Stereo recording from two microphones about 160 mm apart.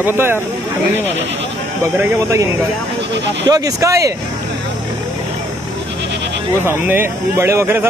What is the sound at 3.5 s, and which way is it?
Speech, 20° right (ahead or behind).